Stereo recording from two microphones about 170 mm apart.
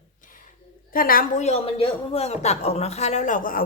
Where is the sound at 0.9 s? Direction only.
55° left (ahead or behind).